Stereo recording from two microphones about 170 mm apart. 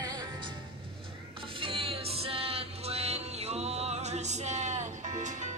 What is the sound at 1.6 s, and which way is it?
Music, 30° right (ahead or behind).